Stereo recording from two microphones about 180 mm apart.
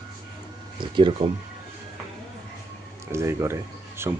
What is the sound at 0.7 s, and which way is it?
Speech, 25° right (ahead or behind).